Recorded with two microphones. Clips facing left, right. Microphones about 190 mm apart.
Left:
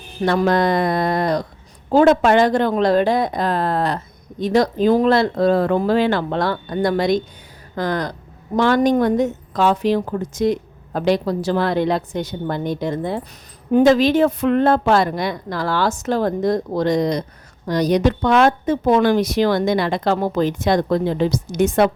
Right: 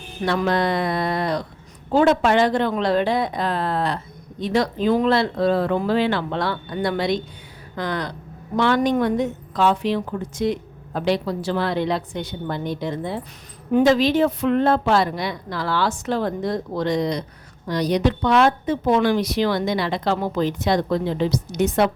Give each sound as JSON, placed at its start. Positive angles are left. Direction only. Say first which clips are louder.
{"t": 0.2, "sound": "a woman's voice", "louder": "left 4 dB", "side_deg": 40}